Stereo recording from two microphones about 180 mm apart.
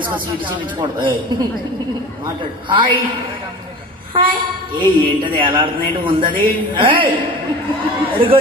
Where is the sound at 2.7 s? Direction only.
25° right (ahead or behind).